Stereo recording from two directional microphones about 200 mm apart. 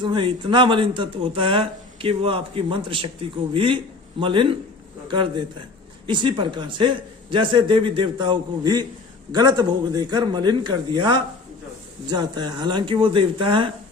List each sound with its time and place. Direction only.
0.0 s speech: 25° right (ahead or behind)